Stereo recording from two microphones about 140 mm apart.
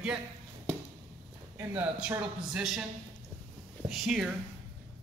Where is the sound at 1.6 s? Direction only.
15° right (ahead or behind).